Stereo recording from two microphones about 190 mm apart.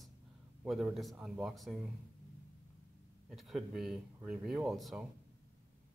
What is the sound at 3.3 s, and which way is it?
Speech, centre (ahead or behind).